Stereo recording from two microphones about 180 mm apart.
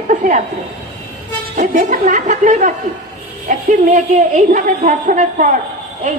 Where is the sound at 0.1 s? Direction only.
45° right (ahead or behind).